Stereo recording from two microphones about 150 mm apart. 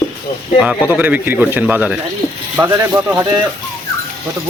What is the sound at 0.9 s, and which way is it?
A man's voice, 10° right (ahead or behind).